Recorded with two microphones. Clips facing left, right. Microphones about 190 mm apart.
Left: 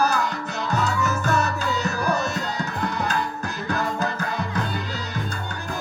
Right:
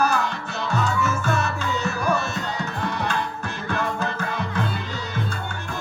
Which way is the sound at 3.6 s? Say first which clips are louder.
Even; 40° left (ahead or behind).